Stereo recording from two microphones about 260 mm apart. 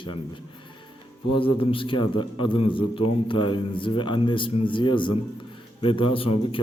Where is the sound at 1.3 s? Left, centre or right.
Left.